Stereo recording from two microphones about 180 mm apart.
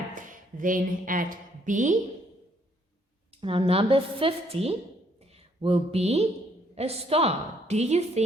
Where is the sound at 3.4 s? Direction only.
30° right (ahead or behind).